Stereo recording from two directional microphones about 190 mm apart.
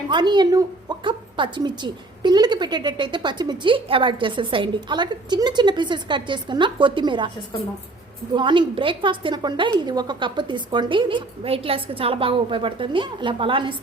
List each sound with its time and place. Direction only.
0.1 s a woman's voice: 25° right (ahead or behind)
8.4 s a woman's voice: 25° right (ahead or behind)